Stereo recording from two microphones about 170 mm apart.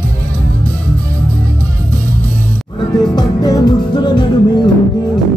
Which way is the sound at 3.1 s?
20° left (ahead or behind).